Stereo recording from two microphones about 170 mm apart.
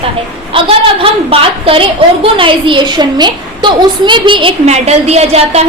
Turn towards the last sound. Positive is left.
turn(degrees=-40)  # may be behind; listen again after turning